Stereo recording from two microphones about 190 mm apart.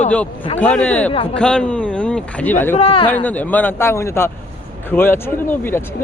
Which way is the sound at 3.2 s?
10° left (ahead or behind).